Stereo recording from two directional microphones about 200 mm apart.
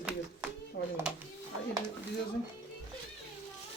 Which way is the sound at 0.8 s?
60° left (ahead or behind).